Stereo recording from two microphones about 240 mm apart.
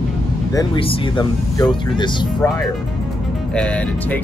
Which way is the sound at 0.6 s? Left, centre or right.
Left.